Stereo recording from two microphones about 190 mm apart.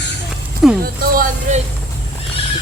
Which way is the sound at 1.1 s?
45° right (ahead or behind).